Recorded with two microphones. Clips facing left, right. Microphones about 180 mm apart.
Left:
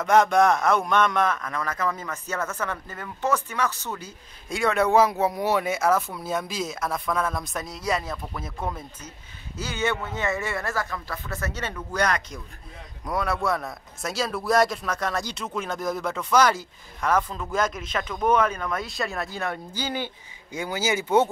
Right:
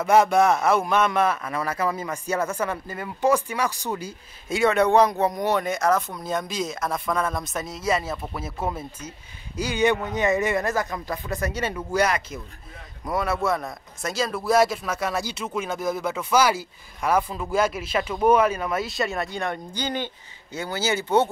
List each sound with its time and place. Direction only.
0.0 s speech: 5° right (ahead or behind)
4.5 s speech: centre (ahead or behind)